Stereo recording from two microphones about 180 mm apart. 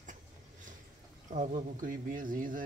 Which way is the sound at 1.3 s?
45° right (ahead or behind).